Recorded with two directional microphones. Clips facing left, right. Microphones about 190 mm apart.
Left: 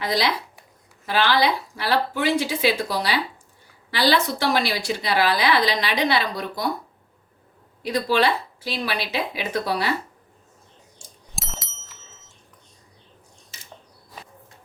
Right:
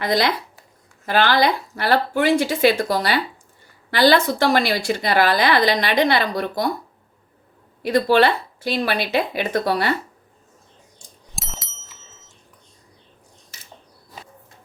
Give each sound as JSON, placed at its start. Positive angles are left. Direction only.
{"t": 0.0, "sound": "a woman's voice", "side_deg": -55}
{"t": 7.9, "sound": "a woman's voice", "side_deg": -55}
{"t": 11.3, "sound": "bicycle bell", "side_deg": 0}